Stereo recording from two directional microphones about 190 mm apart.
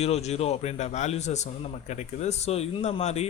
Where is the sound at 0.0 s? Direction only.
35° left (ahead or behind).